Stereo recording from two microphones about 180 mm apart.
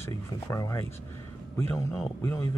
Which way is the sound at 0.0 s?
15° left (ahead or behind).